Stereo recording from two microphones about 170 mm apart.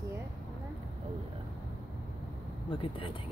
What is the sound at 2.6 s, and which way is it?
Speech, 30° left (ahead or behind).